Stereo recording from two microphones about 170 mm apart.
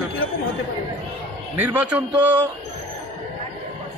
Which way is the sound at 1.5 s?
10° right (ahead or behind).